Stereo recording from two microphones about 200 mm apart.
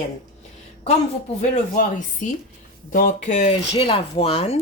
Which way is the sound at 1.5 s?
40° left (ahead or behind).